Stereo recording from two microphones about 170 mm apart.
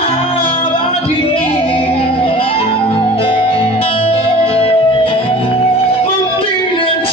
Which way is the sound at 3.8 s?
35° left (ahead or behind).